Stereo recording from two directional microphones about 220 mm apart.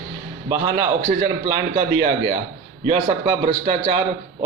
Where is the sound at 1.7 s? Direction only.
30° right (ahead or behind).